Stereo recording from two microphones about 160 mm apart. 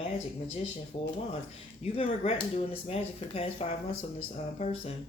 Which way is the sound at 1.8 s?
40° left (ahead or behind).